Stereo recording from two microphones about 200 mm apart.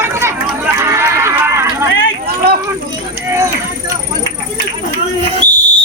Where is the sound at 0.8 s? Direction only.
15° right (ahead or behind).